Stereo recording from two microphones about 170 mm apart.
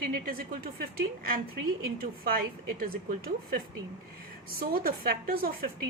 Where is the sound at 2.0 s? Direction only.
60° right (ahead or behind).